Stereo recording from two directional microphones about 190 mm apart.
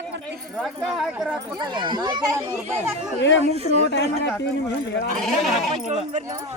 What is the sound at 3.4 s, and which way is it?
Speech, 35° right (ahead or behind).